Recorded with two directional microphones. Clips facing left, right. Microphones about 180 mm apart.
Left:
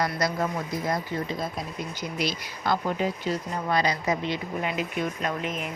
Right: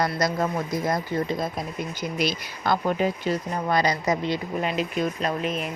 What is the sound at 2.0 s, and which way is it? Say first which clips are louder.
Speech: right 3 dB; 55° right (ahead or behind).